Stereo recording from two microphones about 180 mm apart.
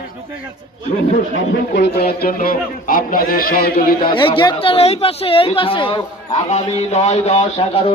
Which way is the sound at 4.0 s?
30° left (ahead or behind).